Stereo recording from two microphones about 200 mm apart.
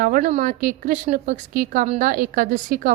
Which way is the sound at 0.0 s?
40° right (ahead or behind).